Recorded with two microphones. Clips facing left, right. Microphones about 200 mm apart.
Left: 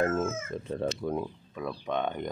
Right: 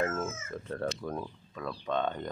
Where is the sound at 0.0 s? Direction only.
20° left (ahead or behind).